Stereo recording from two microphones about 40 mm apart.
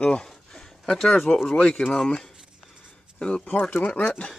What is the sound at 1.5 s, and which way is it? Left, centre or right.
Speech, left.